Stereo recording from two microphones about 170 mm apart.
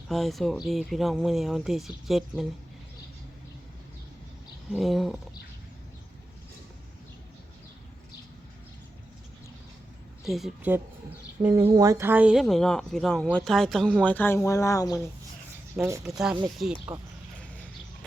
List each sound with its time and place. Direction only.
0.1 s speech: centre (ahead or behind)
4.7 s speech: centre (ahead or behind)
10.2 s speech: centre (ahead or behind)
11.7 s speech: 20° right (ahead or behind); by 14.9 s 20° left (ahead or behind)
15.7 s speech: 10° right (ahead or behind)